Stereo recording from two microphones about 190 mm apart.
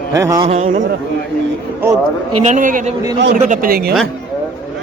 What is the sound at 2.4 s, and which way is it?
A man's voice, 40° right (ahead or behind).